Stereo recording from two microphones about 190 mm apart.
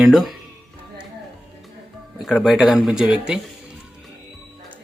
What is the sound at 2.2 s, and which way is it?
Speech, centre (ahead or behind).